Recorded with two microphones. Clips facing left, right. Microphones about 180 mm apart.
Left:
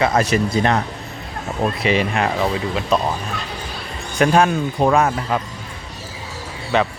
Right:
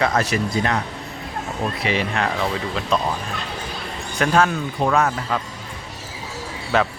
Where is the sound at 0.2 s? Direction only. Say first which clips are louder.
Left 4 dB; 25° left (ahead or behind).